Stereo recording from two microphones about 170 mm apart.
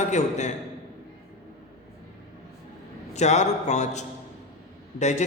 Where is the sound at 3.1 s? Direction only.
40° left (ahead or behind).